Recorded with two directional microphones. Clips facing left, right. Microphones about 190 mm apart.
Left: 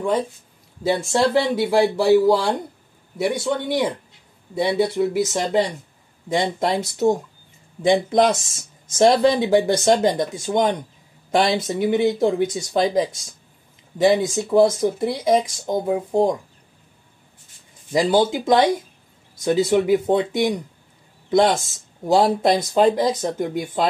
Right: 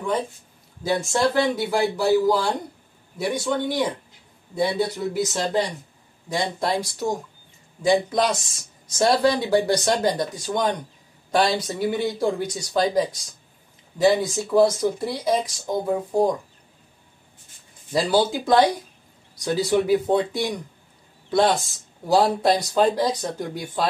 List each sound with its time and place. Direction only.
0.8 s speech: 25° left (ahead or behind)
14.3 s speech: 20° left (ahead or behind)
17.9 s speech: 20° left (ahead or behind)